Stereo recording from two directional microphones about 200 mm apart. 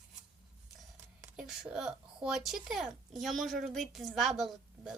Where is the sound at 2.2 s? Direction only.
Centre (ahead or behind).